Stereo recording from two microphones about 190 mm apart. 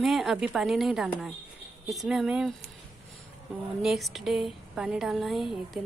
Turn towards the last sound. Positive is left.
turn(degrees=0)  # may be behind; listen again after turning